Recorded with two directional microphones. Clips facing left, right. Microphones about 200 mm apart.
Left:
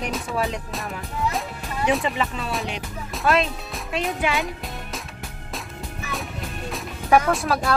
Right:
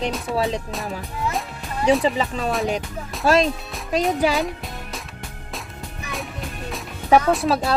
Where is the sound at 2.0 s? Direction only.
35° right (ahead or behind).